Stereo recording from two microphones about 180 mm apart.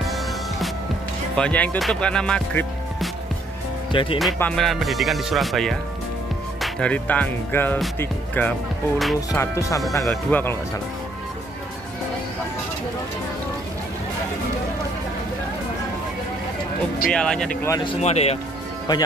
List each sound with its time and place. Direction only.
1.3 s speech: 5° left (ahead or behind)
3.9 s speech: 30° left (ahead or behind)
4.4 s speech: 5° left (ahead or behind)
9.3 s speech: 20° left (ahead or behind)
17.1 s speech: 5° left (ahead or behind)
18.0 s speech: 35° left (ahead or behind)